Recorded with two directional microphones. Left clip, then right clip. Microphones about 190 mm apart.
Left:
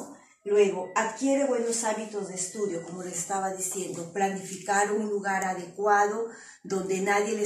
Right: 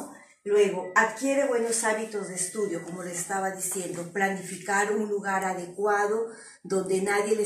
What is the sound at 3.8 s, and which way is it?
A woman's voice, 15° left (ahead or behind).